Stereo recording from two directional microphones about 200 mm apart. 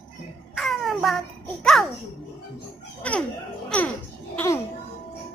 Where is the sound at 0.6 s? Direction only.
Centre (ahead or behind).